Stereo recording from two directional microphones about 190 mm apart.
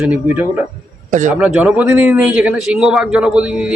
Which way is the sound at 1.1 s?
40° right (ahead or behind).